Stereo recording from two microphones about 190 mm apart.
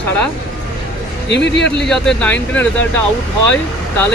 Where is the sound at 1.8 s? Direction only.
5° left (ahead or behind).